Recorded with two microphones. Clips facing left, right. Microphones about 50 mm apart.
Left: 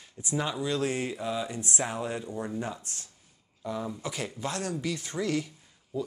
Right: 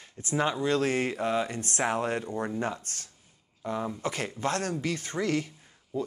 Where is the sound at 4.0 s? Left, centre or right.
Right.